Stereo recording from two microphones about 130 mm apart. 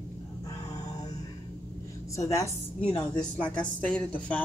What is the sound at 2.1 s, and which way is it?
Speech, 25° left (ahead or behind).